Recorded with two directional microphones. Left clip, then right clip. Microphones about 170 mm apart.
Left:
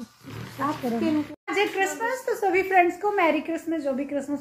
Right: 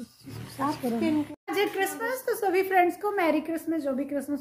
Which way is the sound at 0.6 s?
35° right (ahead or behind).